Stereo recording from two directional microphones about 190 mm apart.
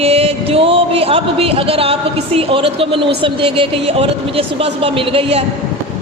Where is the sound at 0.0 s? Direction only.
30° right (ahead or behind).